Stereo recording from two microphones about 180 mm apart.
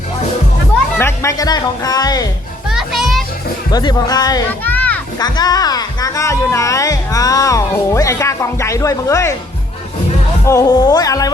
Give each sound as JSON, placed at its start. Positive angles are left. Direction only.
{"t": 0.9, "sound": "speech", "side_deg": 15}
{"t": 2.6, "sound": "children playing", "side_deg": 0}
{"t": 3.7, "sound": "speech", "side_deg": 20}
{"t": 4.6, "sound": "music", "side_deg": 10}
{"t": 5.2, "sound": "speech", "side_deg": 20}
{"t": 10.4, "sound": "speech", "side_deg": 15}